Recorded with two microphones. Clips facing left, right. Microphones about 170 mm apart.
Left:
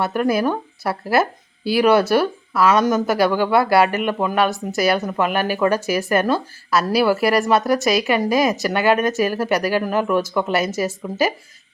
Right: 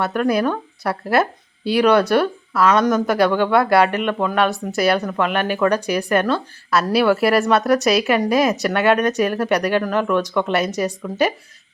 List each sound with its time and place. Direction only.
0.0 s speech: 5° left (ahead or behind)